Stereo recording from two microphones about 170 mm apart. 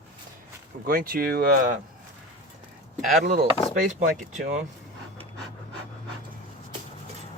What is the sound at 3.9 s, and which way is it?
Speech, 45° right (ahead or behind).